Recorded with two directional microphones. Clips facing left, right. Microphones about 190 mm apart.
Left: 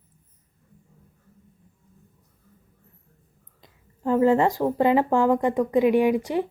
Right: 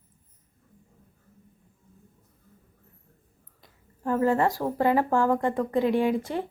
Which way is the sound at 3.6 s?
20° left (ahead or behind).